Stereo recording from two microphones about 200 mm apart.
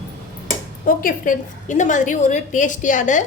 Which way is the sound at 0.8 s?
40° left (ahead or behind).